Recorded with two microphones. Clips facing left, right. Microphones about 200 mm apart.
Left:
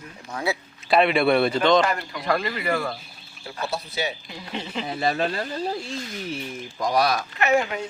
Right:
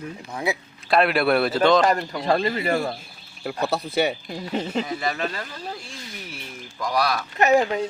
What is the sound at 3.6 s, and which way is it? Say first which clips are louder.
Speech: right 6 dB; 60° right (ahead or behind).